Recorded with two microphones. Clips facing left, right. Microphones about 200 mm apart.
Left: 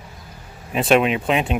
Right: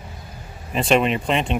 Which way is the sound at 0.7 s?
5° left (ahead or behind).